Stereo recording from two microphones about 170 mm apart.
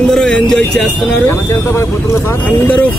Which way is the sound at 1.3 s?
15° left (ahead or behind).